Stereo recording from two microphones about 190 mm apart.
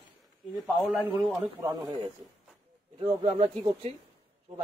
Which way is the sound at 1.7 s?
25° right (ahead or behind).